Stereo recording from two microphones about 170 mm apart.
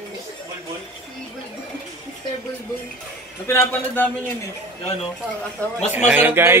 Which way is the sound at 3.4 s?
15° left (ahead or behind).